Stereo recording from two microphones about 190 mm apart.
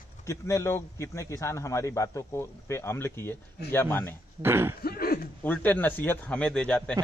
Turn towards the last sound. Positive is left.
turn(degrees=5)  # may be behind; listen again after turning